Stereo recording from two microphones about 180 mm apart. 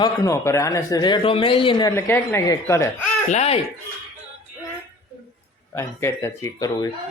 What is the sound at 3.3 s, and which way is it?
Speech, 35° left (ahead or behind).